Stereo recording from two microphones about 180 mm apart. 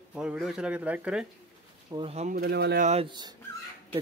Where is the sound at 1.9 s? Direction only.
30° right (ahead or behind).